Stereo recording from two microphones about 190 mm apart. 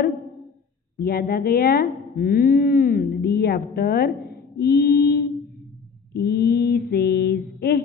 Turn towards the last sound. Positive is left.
turn(degrees=60)  # may be behind; listen again after turning